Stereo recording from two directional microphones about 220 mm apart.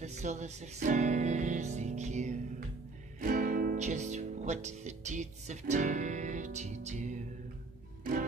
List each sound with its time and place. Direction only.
0.0 s music: 30° right (ahead or behind)
3.2 s speech: 40° right (ahead or behind)
8.0 s music: 40° right (ahead or behind)